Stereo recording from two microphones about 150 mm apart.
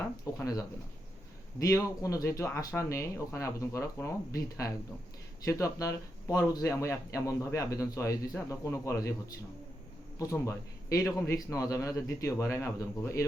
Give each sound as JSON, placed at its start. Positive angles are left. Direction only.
{"t": 0.3, "sound": "speech", "side_deg": 20}
{"t": 1.5, "sound": "speech", "side_deg": 20}
{"t": 10.2, "sound": "speech", "side_deg": 20}